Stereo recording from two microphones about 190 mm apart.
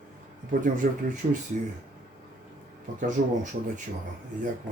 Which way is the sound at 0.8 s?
45° right (ahead or behind).